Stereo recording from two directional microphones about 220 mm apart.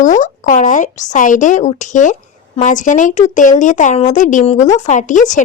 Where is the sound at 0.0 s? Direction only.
35° left (ahead or behind).